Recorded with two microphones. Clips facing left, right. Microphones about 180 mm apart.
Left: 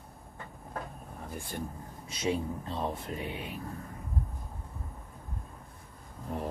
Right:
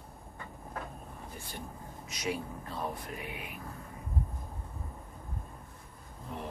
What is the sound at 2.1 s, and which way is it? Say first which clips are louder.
Speech: left 5 dB; 25° left (ahead or behind).